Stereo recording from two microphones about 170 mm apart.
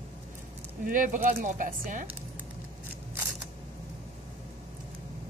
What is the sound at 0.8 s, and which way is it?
Speech, 50° right (ahead or behind).